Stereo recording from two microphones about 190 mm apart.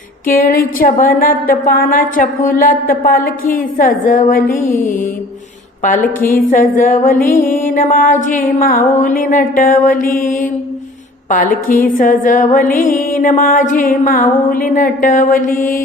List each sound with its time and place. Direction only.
0.3 s music: 50° left (ahead or behind)
6.2 s music: 45° left (ahead or behind)